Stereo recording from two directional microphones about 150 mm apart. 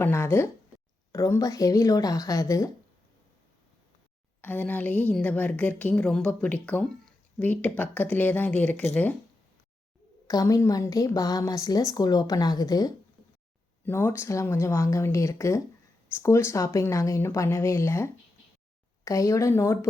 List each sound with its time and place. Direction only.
0.0 s a woman's voice: 15° left (ahead or behind)
4.4 s a woman's voice: 10° left (ahead or behind)
10.2 s a woman's voice: 25° left (ahead or behind)